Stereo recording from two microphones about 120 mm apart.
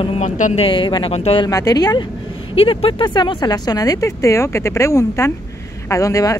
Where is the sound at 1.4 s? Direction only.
30° left (ahead or behind).